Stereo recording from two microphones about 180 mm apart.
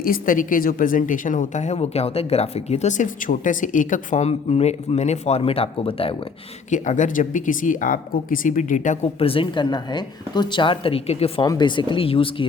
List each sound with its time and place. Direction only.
0.0 s a woman's voice: 50° left (ahead or behind); by 6.1 s 30° left (ahead or behind)
6.7 s speech: 45° left (ahead or behind)
11.4 s speech: 25° left (ahead or behind)